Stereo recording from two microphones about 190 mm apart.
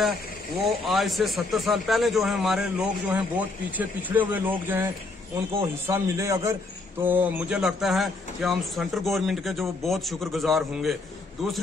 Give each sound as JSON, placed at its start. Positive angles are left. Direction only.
{"t": 0.7, "sound": "a man's voice", "side_deg": 0}
{"t": 5.9, "sound": "a man's voice", "side_deg": -15}